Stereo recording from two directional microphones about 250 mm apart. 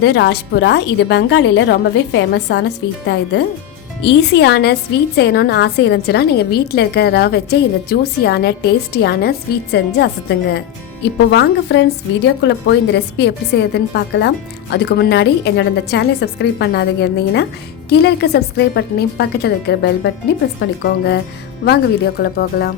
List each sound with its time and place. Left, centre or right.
0.0 s a woman's voice: left